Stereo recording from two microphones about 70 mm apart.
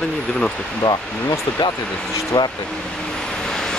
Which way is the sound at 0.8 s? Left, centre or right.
Left.